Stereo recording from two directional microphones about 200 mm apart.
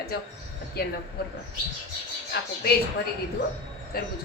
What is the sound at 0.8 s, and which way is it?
Speech, 50° left (ahead or behind).